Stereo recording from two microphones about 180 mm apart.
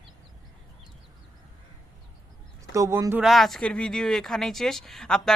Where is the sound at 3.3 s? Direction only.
Centre (ahead or behind).